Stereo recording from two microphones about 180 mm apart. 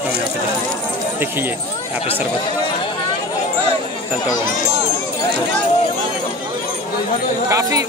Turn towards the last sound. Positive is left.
turn(degrees=-15)  # may be behind; listen again after turning